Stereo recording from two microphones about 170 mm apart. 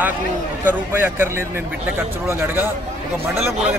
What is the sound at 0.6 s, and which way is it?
Speech, 10° right (ahead or behind).